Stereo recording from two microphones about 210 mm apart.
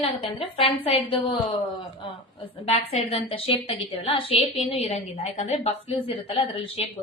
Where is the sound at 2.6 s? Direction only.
30° left (ahead or behind).